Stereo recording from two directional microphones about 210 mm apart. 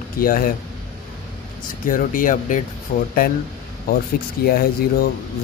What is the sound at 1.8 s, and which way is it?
Speech, 40° left (ahead or behind).